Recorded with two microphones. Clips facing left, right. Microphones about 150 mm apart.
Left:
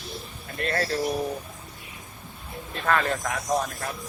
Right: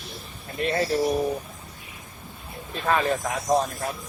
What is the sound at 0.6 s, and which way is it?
Speech, 20° right (ahead or behind).